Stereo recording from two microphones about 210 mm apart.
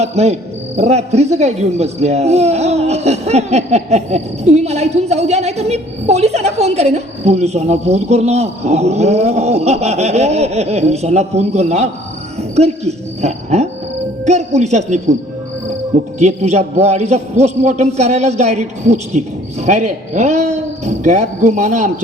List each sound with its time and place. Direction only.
0.0 s speech: 30° right (ahead or behind)
16.1 s speech: 30° right (ahead or behind)